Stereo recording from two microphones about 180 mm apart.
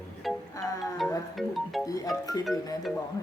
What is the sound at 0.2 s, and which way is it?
Music, centre (ahead or behind).